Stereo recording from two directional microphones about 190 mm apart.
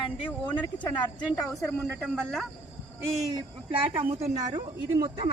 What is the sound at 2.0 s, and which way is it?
Speech, centre (ahead or behind).